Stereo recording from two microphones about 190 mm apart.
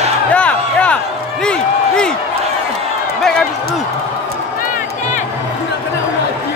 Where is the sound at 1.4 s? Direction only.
5° left (ahead or behind).